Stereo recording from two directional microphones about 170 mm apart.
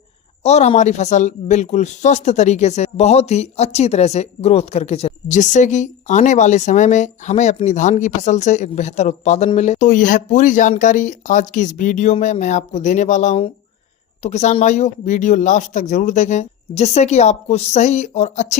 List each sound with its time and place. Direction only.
0.4 s speech: 40° left (ahead or behind)